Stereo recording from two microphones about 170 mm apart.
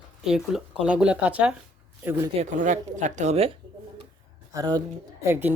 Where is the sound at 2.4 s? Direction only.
45° right (ahead or behind).